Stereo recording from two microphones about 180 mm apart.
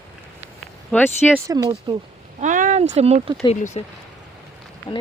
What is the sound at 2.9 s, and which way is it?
Speech, 35° right (ahead or behind).